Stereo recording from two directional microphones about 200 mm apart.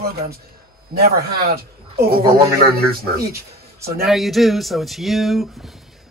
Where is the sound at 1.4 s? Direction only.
50° right (ahead or behind).